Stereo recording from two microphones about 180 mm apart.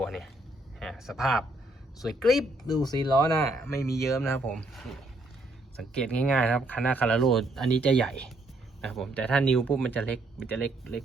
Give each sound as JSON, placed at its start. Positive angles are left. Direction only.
{"t": 0.0, "sound": "a sound", "side_deg": 0}
{"t": 2.0, "sound": "speech", "side_deg": 0}
{"t": 2.6, "sound": "speech", "side_deg": 20}
{"t": 4.0, "sound": "speech", "side_deg": 0}
{"t": 6.0, "sound": "speech", "side_deg": 5}